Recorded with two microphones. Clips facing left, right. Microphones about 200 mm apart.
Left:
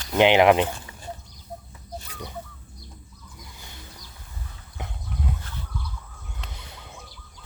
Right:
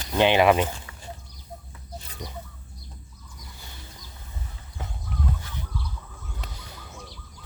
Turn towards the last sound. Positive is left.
turn(degrees=20)  # may be behind; listen again after turning